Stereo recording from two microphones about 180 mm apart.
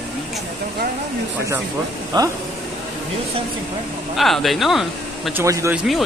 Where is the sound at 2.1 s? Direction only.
25° right (ahead or behind).